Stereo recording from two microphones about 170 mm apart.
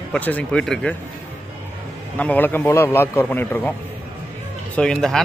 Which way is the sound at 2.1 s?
10° left (ahead or behind).